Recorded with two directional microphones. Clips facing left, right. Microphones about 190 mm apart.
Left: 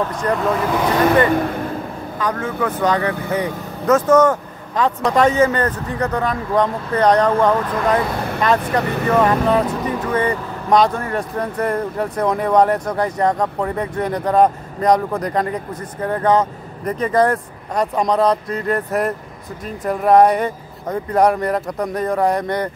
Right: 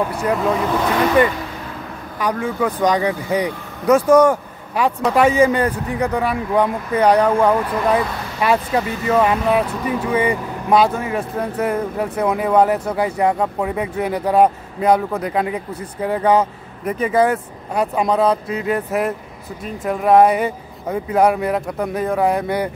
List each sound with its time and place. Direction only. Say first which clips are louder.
0.0 s speech: even; 10° right (ahead or behind)
2.1 s speech: right 2 dB; 15° right (ahead or behind)
8.8 s speech: left 3 dB; 60° left (ahead or behind)
9.2 s speech: left 1 dB; 10° right (ahead or behind)